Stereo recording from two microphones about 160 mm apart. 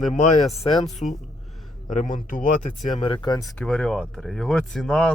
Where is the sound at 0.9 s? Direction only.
50° left (ahead or behind).